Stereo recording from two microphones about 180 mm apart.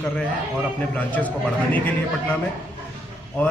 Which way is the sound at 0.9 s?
10° left (ahead or behind).